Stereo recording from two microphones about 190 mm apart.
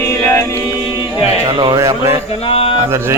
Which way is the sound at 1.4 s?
25° right (ahead or behind).